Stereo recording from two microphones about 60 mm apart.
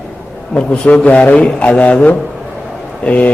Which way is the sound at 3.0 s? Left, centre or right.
Left.